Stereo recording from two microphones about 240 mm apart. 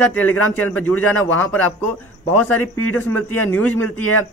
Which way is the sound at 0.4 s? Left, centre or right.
Left.